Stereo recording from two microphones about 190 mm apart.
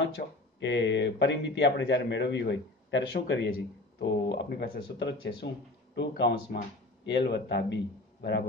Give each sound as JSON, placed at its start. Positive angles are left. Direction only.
{"t": 0.2, "sound": "speech", "side_deg": 50}
{"t": 0.6, "sound": "a man's voice", "side_deg": 70}